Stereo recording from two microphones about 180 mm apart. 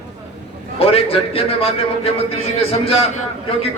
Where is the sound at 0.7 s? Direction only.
35° left (ahead or behind).